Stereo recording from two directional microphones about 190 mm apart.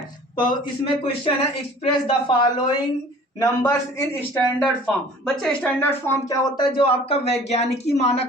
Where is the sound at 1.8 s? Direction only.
30° left (ahead or behind).